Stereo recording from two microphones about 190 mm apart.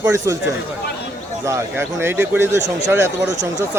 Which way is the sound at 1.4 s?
15° right (ahead or behind).